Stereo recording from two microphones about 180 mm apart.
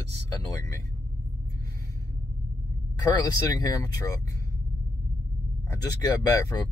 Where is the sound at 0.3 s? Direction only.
15° left (ahead or behind).